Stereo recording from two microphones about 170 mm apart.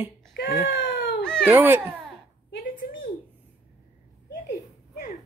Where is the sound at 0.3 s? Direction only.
70° left (ahead or behind).